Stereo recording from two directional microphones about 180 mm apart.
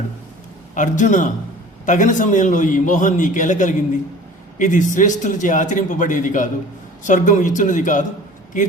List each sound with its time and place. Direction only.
0.7 s a man's voice: 45° left (ahead or behind)